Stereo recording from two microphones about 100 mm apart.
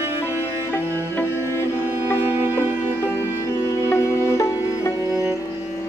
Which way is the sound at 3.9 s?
30° left (ahead or behind).